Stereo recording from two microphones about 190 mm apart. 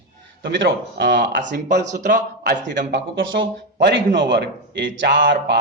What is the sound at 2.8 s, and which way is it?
Speech, 70° right (ahead or behind).